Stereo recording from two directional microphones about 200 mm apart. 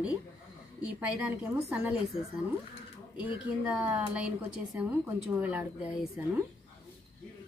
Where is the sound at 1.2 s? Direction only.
5° right (ahead or behind).